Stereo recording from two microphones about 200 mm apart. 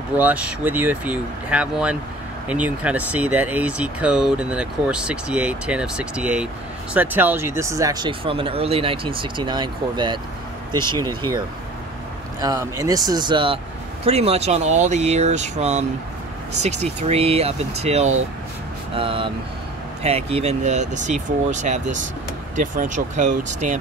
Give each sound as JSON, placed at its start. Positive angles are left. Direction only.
{"t": 0.1, "sound": "speech", "side_deg": -10}